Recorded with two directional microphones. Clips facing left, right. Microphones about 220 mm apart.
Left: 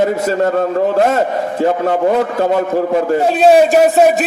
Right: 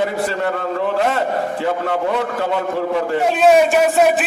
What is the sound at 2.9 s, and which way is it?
Speech, 40° left (ahead or behind).